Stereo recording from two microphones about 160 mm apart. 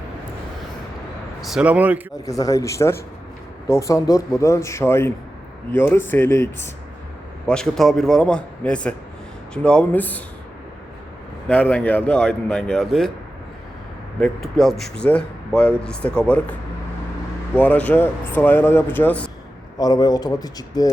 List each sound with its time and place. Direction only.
1.4 s speech: 5° right (ahead or behind)
2.1 s speech: 20° left (ahead or behind)
7.4 s a man's voice: 5° left (ahead or behind)
11.4 s speech: 10° left (ahead or behind)
14.2 s speech: centre (ahead or behind)
17.6 s speech: 10° left (ahead or behind)
19.8 s speech: 25° left (ahead or behind)